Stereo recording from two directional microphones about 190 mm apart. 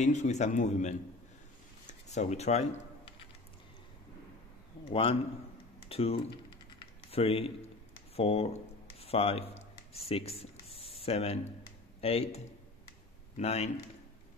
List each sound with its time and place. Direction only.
0.0 s speech: 35° left (ahead or behind)
4.8 s a man's voice: 30° left (ahead or behind)
9.0 s a sound: 30° left (ahead or behind)
11.0 s speech: 30° left (ahead or behind)
13.4 s speech: 35° left (ahead or behind)